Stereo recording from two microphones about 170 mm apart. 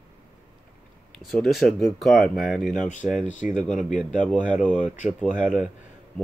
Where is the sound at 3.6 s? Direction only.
5° left (ahead or behind).